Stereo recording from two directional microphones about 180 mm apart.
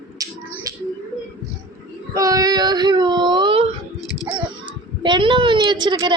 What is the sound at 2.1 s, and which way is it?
Baby cry, 20° right (ahead or behind).